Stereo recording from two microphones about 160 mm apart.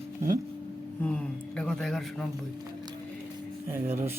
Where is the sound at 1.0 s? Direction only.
5° left (ahead or behind).